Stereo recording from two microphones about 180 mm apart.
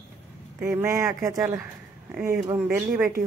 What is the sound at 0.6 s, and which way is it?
Speech, 15° right (ahead or behind).